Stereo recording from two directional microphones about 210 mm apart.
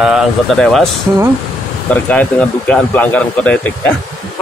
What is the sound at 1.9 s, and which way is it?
Speech, 5° left (ahead or behind).